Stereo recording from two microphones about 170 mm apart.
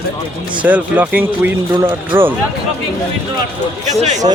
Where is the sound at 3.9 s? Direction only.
45° right (ahead or behind).